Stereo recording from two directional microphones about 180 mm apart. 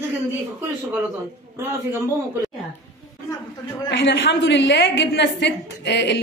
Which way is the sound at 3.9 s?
75° left (ahead or behind).